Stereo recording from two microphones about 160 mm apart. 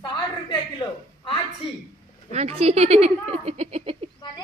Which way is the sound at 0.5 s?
30° left (ahead or behind).